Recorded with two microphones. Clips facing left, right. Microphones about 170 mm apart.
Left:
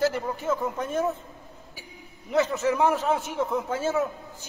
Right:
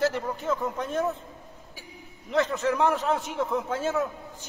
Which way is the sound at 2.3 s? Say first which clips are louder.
Left 1 dB; 5° left (ahead or behind).